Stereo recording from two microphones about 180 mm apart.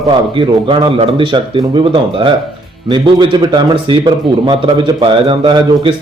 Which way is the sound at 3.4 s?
25° right (ahead or behind).